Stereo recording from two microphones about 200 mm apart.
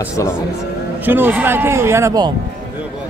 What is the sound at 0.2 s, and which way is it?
Speech, 15° left (ahead or behind).